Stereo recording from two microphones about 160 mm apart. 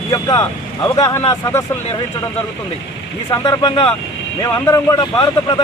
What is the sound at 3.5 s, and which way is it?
Speech, 30° left (ahead or behind).